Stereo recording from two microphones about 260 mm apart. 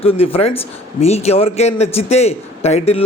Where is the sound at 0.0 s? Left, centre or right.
Left.